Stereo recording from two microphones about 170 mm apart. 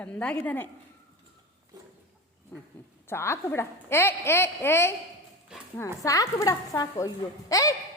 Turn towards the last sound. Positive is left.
turn(degrees=20)  # may be behind; listen again after turning